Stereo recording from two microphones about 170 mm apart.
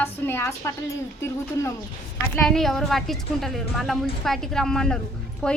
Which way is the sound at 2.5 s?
Centre (ahead or behind).